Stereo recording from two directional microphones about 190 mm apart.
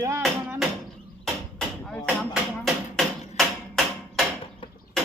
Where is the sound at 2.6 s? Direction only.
Centre (ahead or behind).